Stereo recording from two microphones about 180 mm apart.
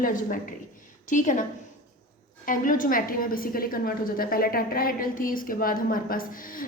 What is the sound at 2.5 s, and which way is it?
A woman's voice, 50° left (ahead or behind).